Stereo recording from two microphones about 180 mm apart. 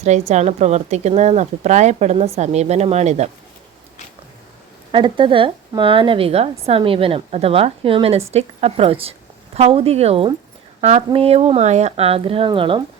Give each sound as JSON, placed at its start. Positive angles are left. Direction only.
{"t": 0.0, "sound": "speech", "side_deg": -40}
{"t": 4.9, "sound": "speech", "side_deg": -25}